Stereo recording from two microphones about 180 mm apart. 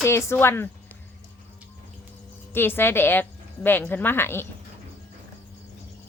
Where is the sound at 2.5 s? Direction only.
10° left (ahead or behind).